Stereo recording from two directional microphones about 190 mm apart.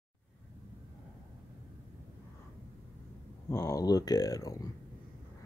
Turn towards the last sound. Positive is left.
turn(degrees=20)  # may be behind; listen again after turning